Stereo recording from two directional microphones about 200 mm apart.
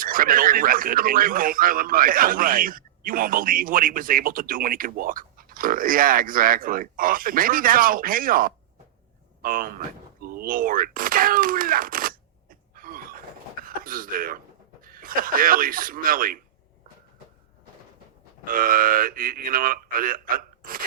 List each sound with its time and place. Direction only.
0.0 s speech: 45° right (ahead or behind)
9.4 s a sound: 45° right (ahead or behind)
13.7 s speech: 45° right (ahead or behind)
18.4 s speech: 45° right (ahead or behind)